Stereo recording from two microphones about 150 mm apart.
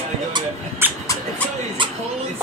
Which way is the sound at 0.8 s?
15° right (ahead or behind).